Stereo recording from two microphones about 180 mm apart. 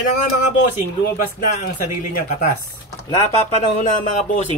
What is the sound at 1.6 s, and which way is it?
Speech, 40° left (ahead or behind).